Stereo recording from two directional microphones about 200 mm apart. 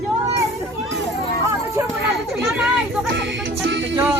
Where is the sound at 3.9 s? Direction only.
10° right (ahead or behind).